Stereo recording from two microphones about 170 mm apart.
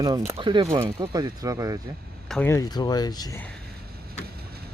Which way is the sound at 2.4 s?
20° left (ahead or behind).